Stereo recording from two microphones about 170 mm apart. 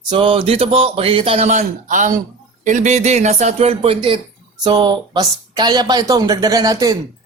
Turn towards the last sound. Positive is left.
turn(degrees=-20)  # may be behind; listen again after turning